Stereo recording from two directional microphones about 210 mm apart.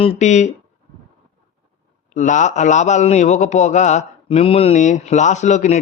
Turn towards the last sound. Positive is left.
turn(degrees=35)  # may be behind; listen again after turning